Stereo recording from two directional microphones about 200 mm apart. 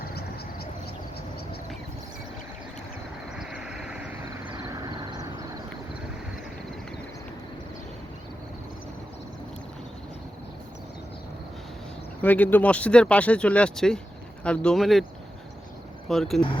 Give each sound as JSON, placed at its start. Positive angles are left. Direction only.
{"t": 0.1, "sound": "a sound", "side_deg": 55}
{"t": 3.3, "sound": "vehicle", "side_deg": -5}
{"t": 4.4, "sound": "vehicle", "side_deg": -20}
{"t": 12.2, "sound": "speech", "side_deg": 10}
{"t": 16.0, "sound": "speech", "side_deg": 0}